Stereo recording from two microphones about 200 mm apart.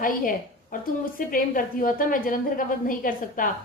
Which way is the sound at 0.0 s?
45° left (ahead or behind).